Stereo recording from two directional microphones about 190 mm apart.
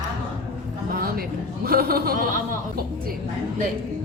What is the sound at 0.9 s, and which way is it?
Speech, 50° right (ahead or behind).